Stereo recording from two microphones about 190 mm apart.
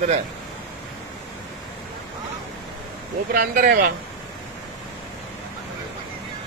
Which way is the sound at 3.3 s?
50° right (ahead or behind).